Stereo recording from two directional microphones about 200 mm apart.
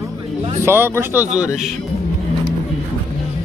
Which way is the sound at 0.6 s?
10° right (ahead or behind).